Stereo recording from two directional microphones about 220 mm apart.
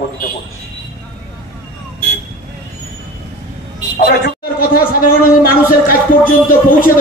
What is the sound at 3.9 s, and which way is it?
Speech, 40° left (ahead or behind).